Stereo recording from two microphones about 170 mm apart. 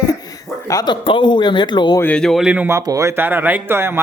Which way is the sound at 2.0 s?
5° left (ahead or behind).